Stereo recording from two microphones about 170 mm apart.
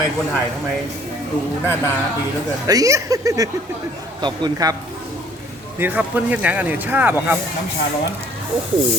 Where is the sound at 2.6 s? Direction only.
20° right (ahead or behind).